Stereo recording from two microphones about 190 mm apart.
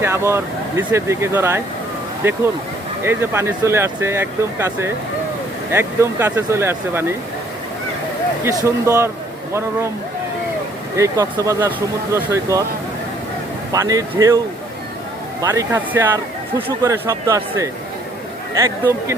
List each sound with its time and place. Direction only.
0.0 s speech: 15° right (ahead or behind)
8.4 s speech: 15° right (ahead or behind)
10.9 s speech: 15° right (ahead or behind)
13.7 s speech: 20° right (ahead or behind)
15.4 s speech: 15° right (ahead or behind)